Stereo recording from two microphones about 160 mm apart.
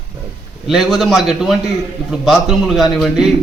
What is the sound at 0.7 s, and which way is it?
A man's voice, centre (ahead or behind).